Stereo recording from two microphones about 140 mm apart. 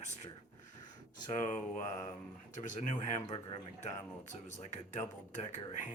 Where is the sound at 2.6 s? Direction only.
65° left (ahead or behind).